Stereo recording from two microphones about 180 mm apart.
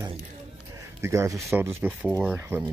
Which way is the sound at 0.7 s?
15° right (ahead or behind).